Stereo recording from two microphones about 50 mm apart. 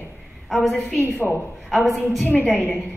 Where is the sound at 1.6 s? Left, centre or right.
Centre.